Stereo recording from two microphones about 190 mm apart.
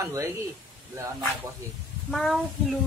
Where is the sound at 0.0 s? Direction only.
15° right (ahead or behind).